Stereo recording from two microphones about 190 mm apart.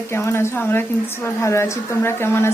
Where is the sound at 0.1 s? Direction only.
15° left (ahead or behind).